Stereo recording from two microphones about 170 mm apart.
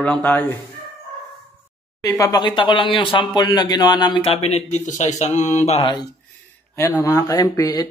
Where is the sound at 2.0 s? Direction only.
20° left (ahead or behind); by 5.9 s 35° left (ahead or behind).